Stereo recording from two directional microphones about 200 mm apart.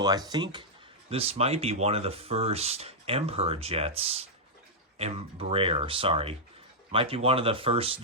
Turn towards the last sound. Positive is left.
turn(degrees=-30)  # may be behind; listen again after turning